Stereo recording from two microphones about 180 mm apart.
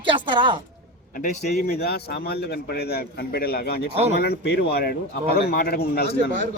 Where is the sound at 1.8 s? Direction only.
60° left (ahead or behind).